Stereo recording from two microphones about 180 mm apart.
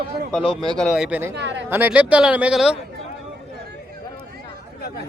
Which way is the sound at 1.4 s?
85° right.